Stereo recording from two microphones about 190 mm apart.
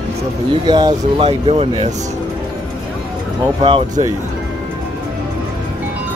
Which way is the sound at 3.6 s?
30° right (ahead or behind).